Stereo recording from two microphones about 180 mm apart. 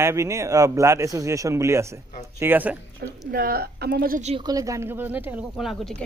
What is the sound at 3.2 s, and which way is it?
Speech, 55° right (ahead or behind).